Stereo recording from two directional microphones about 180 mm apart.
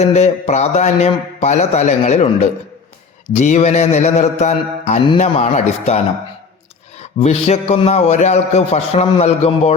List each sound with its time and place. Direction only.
0.0 s a man's voice: 40° left (ahead or behind)
7.0 s a man's voice: 35° left (ahead or behind)